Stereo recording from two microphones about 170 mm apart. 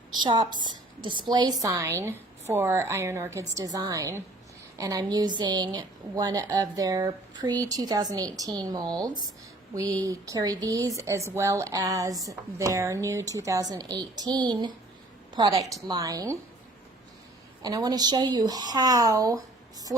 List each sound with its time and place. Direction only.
0.2 s a woman's voice: 25° right (ahead or behind)
17.6 s a woman's voice: 20° right (ahead or behind)